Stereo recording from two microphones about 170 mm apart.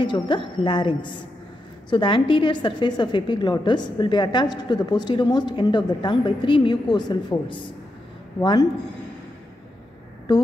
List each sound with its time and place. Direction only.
0.0 s a woman's voice: 30° left (ahead or behind)